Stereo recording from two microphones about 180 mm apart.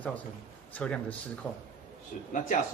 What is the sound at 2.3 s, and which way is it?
Speech, 45° left (ahead or behind).